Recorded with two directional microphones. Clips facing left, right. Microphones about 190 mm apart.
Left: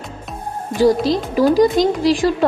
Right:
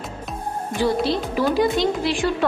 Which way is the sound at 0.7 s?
40° left (ahead or behind).